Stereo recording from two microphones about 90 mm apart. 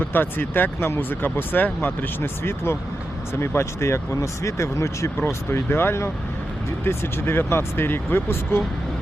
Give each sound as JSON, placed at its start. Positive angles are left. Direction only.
{"t": 0.0, "sound": "speech", "side_deg": 20}